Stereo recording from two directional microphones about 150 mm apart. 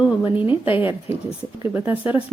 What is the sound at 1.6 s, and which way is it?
Speech, 10° right (ahead or behind).